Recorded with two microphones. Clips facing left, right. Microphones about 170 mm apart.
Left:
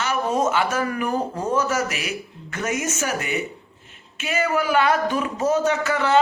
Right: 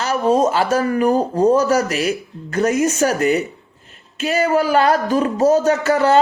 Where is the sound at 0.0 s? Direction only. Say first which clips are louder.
Right 6 dB; 35° right (ahead or behind).